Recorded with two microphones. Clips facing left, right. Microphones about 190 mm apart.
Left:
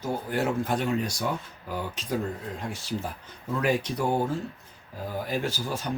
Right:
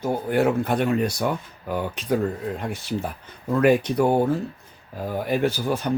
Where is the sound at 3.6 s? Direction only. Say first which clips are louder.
Right 8 dB; 60° right (ahead or behind).